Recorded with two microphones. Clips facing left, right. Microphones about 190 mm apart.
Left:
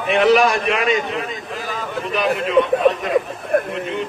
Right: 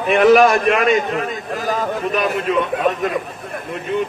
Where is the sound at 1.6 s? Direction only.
40° right (ahead or behind).